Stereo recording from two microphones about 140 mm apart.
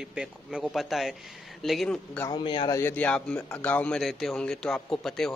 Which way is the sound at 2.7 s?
15° left (ahead or behind).